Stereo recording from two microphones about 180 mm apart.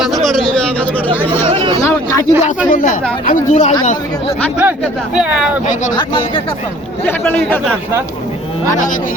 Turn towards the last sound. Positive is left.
turn(degrees=10)  # may be behind; listen again after turning